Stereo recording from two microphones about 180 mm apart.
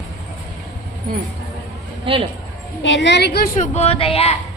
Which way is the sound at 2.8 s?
75° left (ahead or behind).